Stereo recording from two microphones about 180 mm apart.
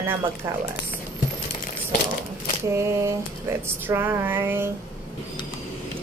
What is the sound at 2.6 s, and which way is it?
A woman's voice, 15° right (ahead or behind).